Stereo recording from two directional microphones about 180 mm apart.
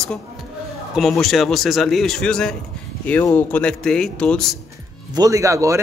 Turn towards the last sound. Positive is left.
turn(degrees=-15)  # may be behind; listen again after turning